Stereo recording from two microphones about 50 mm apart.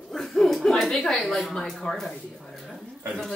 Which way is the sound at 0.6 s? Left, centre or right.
Centre.